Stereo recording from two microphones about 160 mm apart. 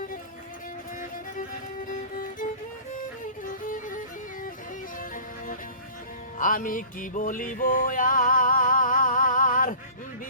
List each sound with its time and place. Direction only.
1.9 s music: 55° left (ahead or behind)